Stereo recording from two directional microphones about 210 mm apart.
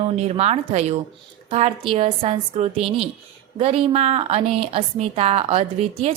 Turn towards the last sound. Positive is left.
turn(degrees=-30)  # may be behind; listen again after turning